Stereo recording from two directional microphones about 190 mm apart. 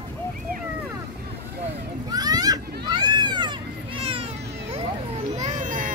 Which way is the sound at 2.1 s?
20° right (ahead or behind).